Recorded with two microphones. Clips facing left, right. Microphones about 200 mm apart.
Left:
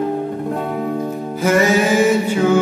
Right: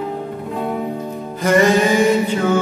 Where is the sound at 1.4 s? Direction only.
5° left (ahead or behind).